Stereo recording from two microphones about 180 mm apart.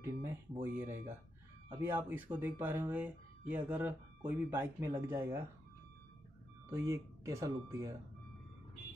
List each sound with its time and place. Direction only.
0.0 s speech: 10° right (ahead or behind)
6.7 s speech: 15° right (ahead or behind)